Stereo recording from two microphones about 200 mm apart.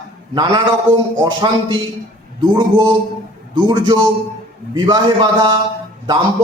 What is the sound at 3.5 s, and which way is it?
A man's voice, 20° right (ahead or behind).